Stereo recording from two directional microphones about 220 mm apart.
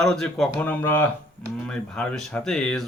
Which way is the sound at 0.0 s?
Centre (ahead or behind).